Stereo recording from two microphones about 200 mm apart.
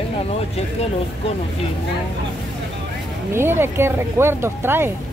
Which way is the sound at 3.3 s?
10° right (ahead or behind).